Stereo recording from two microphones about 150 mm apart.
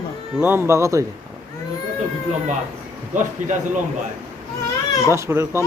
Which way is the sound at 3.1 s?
55° right (ahead or behind).